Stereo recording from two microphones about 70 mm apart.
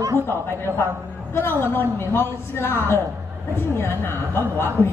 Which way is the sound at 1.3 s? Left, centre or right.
Left.